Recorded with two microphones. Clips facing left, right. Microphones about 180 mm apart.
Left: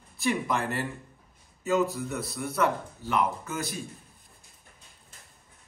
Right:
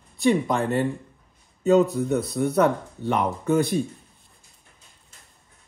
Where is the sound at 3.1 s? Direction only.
35° right (ahead or behind).